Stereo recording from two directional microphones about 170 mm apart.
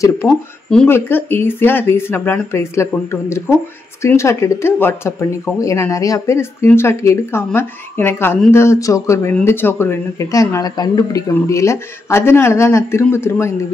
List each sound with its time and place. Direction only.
0.3 s speech: 5° left (ahead or behind)